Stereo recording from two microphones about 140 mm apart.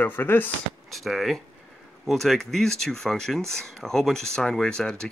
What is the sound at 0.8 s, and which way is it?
Speech, centre (ahead or behind).